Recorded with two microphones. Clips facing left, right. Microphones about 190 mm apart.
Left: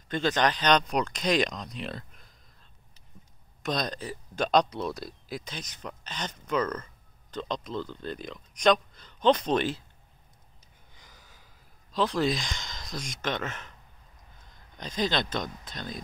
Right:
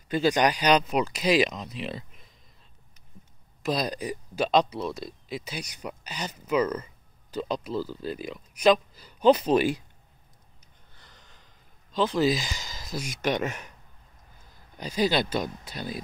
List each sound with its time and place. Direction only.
0.1 s speech: 10° right (ahead or behind)
3.6 s speech: 5° right (ahead or behind)
11.0 s a sound: 10° left (ahead or behind); by 13.7 s 10° right (ahead or behind)
14.5 s speech: 10° right (ahead or behind)